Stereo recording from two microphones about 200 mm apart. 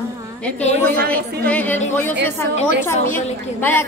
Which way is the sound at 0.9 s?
50° right (ahead or behind).